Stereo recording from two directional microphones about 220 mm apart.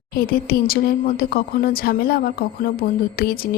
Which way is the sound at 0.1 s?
40° left (ahead or behind).